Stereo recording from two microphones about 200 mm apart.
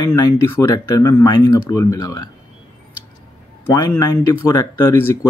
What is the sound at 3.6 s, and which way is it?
Speech, 10° left (ahead or behind).